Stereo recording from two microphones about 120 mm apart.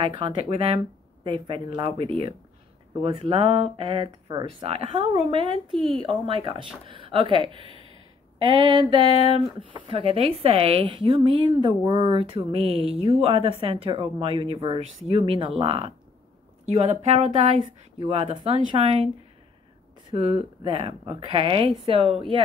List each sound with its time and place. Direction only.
0.0 s speech: 40° right (ahead or behind)
1.2 s speech: 40° right (ahead or behind)
4.3 s speech: 40° right (ahead or behind)
8.4 s a sound: 40° right (ahead or behind)
9.3 s speech: 45° right (ahead or behind)
16.6 s speech: 65° right (ahead or behind)
17.9 s speech: 50° right (ahead or behind)
20.2 s speech: 55° right (ahead or behind)